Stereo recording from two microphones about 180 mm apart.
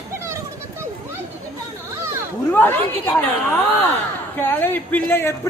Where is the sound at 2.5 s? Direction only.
10° left (ahead or behind).